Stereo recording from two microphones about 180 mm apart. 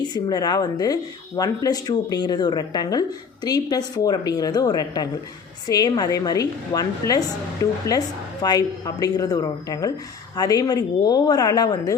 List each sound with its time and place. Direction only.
0.0 s a woman's voice: 20° left (ahead or behind)